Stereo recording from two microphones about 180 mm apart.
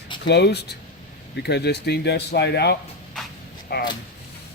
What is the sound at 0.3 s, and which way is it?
Speech, 70° left (ahead or behind).